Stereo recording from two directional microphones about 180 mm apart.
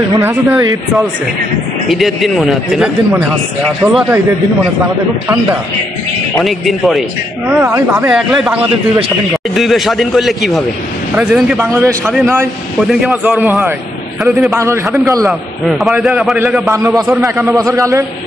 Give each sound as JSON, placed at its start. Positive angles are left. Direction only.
{"t": 0.2, "sound": "speech", "side_deg": -15}
{"t": 1.9, "sound": "speech", "side_deg": 0}
{"t": 6.4, "sound": "speech", "side_deg": 0}
{"t": 12.8, "sound": "speech", "side_deg": -5}
{"t": 14.5, "sound": "speech", "side_deg": -15}
{"t": 15.8, "sound": "speech", "side_deg": 0}
{"t": 17.2, "sound": "speech", "side_deg": -15}